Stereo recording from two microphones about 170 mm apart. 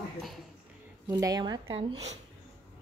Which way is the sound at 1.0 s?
20° right (ahead or behind).